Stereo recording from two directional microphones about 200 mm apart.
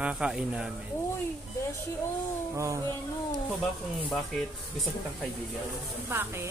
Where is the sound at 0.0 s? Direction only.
5° right (ahead or behind).